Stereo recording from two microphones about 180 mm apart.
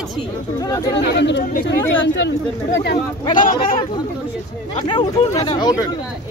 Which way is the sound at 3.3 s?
45° left (ahead or behind).